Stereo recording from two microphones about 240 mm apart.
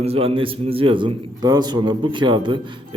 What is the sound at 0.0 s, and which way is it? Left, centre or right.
A man's voice, right.